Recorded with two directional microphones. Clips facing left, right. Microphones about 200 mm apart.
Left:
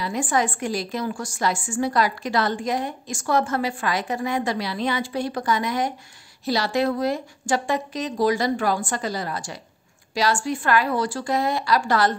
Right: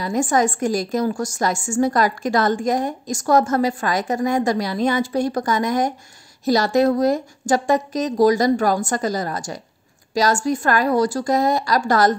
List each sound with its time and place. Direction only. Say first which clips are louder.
0.0 s a woman's voice: right 5 dB; 45° right (ahead or behind)